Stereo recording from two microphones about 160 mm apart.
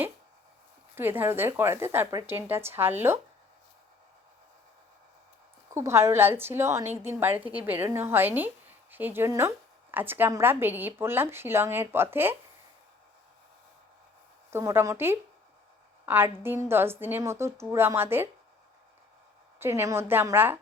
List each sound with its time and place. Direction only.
0.9 s a woman's voice: 15° right (ahead or behind)
5.7 s a woman's voice: 15° right (ahead or behind)
14.5 s a woman's voice: 15° right (ahead or behind)
19.5 s a woman's voice: 15° right (ahead or behind)